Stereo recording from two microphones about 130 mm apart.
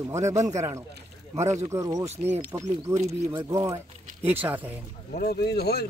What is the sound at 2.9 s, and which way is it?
Speech, 55° right (ahead or behind).